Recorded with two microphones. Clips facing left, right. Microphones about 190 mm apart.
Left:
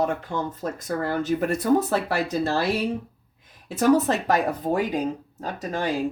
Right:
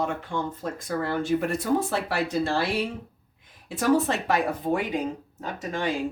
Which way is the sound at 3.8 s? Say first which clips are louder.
Left 3 dB; 40° left (ahead or behind).